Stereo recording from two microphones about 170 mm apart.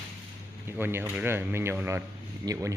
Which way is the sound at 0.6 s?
15° right (ahead or behind).